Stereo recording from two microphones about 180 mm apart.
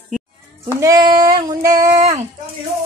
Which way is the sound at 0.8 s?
20° right (ahead or behind).